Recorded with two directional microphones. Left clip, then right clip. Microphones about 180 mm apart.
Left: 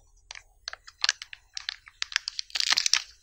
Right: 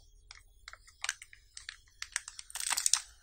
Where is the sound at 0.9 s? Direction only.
15° left (ahead or behind).